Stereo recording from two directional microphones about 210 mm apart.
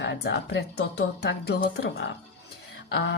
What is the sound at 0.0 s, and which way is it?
A woman's voice, 55° left (ahead or behind).